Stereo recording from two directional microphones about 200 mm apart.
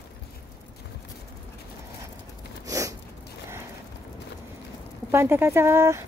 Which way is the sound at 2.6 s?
15° right (ahead or behind).